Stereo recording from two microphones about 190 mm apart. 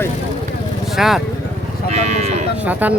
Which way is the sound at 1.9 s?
35° right (ahead or behind).